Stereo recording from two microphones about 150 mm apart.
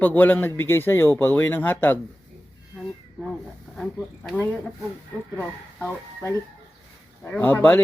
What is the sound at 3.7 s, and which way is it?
Speech, 5° left (ahead or behind).